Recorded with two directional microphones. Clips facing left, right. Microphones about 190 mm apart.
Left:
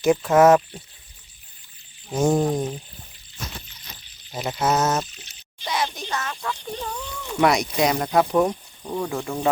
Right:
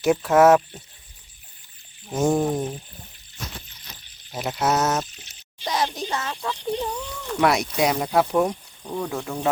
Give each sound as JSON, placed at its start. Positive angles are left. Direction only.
{"t": 0.0, "sound": "speech", "side_deg": -5}
{"t": 2.1, "sound": "speech", "side_deg": 0}
{"t": 4.3, "sound": "speech", "side_deg": -5}
{"t": 5.6, "sound": "a child's voice", "side_deg": -40}
{"t": 6.4, "sound": "speech", "side_deg": -20}
{"t": 7.3, "sound": "speech", "side_deg": 0}
{"t": 8.4, "sound": "speech", "side_deg": 5}